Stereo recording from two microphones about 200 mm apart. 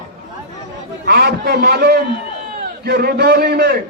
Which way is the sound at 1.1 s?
50° right (ahead or behind).